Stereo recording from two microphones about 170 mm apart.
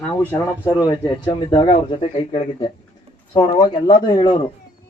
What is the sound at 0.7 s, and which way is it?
Speech, 25° left (ahead or behind).